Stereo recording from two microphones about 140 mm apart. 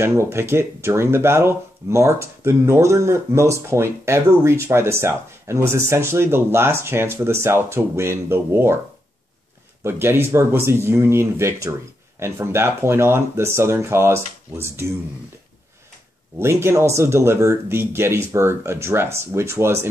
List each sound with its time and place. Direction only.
0.0 s speech: 20° right (ahead or behind)
9.8 s speech: 15° right (ahead or behind)
16.3 s speech: 20° right (ahead or behind)